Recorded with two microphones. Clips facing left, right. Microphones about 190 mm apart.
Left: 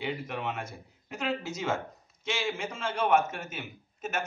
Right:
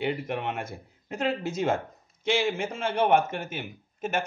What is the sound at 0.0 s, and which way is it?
Speech, 55° right (ahead or behind).